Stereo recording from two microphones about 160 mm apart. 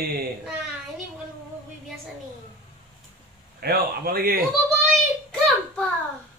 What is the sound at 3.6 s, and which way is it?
Speech, 75° right (ahead or behind).